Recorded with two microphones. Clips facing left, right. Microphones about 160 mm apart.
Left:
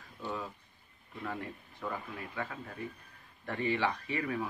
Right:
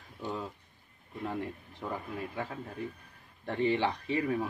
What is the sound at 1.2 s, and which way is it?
Speech, 25° right (ahead or behind).